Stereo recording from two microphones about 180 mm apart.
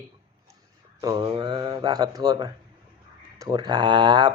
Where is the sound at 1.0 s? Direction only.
25° right (ahead or behind).